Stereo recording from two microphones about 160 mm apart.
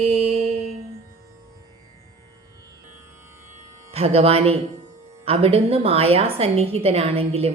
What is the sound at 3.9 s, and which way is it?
A woman's voice, 40° right (ahead or behind).